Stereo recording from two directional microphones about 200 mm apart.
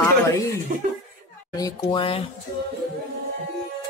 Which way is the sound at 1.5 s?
20° left (ahead or behind).